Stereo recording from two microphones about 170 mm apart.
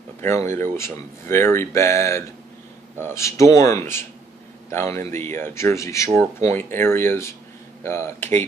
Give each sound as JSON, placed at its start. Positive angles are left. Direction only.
{"t": 0.2, "sound": "speech", "side_deg": 15}